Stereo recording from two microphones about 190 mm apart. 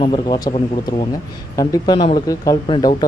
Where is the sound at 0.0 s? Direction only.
25° left (ahead or behind).